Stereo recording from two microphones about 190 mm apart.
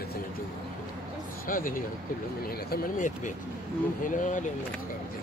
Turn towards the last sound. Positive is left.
turn(degrees=40)  # may be behind; listen again after turning